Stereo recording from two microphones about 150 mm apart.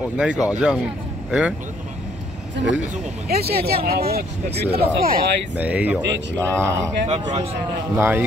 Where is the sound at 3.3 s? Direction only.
90° right.